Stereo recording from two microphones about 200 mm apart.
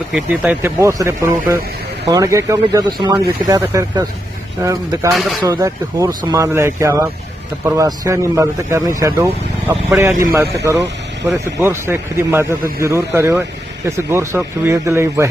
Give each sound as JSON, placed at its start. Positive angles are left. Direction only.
{"t": 0.1, "sound": "a man's voice", "side_deg": -10}
{"t": 5.1, "sound": "speech", "side_deg": 0}
{"t": 5.4, "sound": "a man's voice", "side_deg": -20}